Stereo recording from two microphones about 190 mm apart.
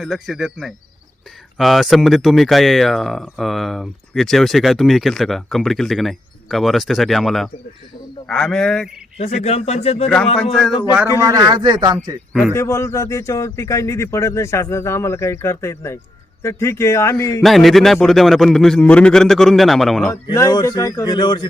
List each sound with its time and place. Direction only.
0.0 s speech: centre (ahead or behind)
9.1 s speech: 35° left (ahead or behind)
11.2 s speech: 15° right (ahead or behind)
12.3 s a man's voice: centre (ahead or behind)
12.5 s a man's voice: 15° left (ahead or behind)
17.4 s speech: centre (ahead or behind)
20.2 s speech: 20° left (ahead or behind)